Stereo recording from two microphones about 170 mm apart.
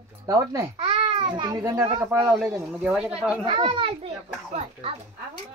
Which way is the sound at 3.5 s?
30° right (ahead or behind).